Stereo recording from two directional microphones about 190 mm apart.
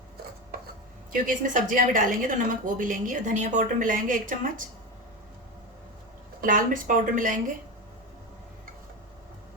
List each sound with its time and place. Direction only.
1.1 s a woman's voice: 45° right (ahead or behind)
6.4 s a woman's voice: 45° right (ahead or behind)